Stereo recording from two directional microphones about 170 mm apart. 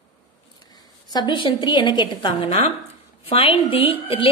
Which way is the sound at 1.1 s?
25° left (ahead or behind).